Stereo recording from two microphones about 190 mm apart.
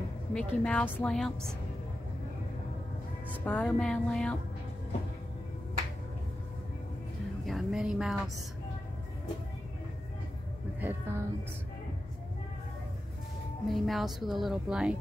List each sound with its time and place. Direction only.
0.3 s speech: 5° left (ahead or behind)
3.4 s speech: centre (ahead or behind)
7.4 s speech: centre (ahead or behind)
10.8 s music: 10° right (ahead or behind)
13.7 s speech: centre (ahead or behind)